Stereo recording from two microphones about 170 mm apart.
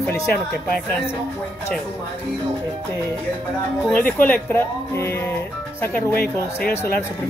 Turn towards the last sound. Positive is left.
turn(degrees=60)  # may be behind; listen again after turning